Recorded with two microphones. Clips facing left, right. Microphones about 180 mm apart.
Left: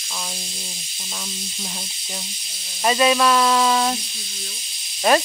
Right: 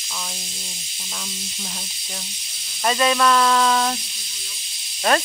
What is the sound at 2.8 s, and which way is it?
Speech, 10° left (ahead or behind).